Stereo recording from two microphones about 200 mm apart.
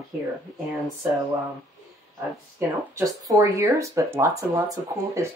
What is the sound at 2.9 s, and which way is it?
Speech, 15° right (ahead or behind).